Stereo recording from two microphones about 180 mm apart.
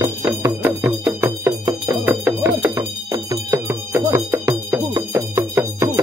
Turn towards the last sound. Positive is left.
turn(degrees=-15)  # may be behind; listen again after turning